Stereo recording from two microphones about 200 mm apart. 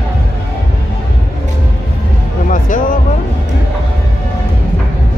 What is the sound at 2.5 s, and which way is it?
Music, 40° left (ahead or behind).